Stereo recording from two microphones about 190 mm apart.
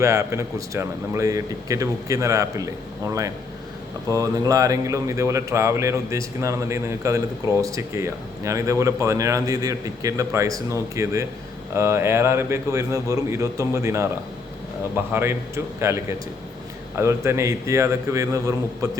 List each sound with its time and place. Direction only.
0.0 s speech: 15° right (ahead or behind)
4.1 s speech: 20° right (ahead or behind)